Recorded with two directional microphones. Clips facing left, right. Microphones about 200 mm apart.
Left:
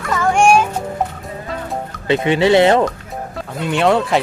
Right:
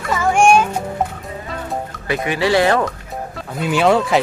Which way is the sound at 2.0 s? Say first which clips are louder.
Left 5 dB; 25° left (ahead or behind).